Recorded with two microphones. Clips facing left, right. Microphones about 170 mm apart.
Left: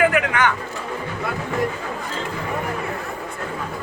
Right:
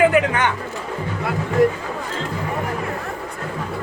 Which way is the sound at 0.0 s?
30° right (ahead or behind).